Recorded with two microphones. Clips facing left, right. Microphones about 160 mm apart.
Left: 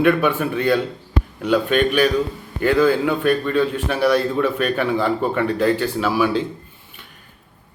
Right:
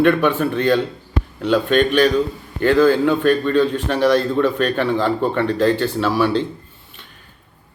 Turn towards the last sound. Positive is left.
turn(degrees=5)  # may be behind; listen again after turning